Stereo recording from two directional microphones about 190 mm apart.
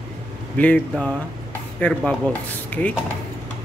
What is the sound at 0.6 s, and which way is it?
Speech, 5° left (ahead or behind).